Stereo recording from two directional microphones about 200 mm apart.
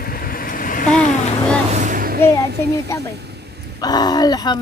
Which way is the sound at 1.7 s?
40° right (ahead or behind).